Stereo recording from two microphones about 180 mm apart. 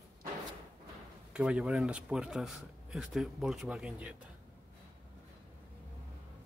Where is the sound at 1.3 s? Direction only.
5° right (ahead or behind).